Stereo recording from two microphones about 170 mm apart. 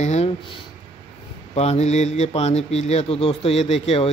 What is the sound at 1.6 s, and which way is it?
A man's voice, 40° left (ahead or behind).